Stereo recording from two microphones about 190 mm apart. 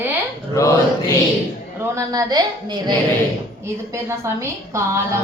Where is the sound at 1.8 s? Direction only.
15° right (ahead or behind).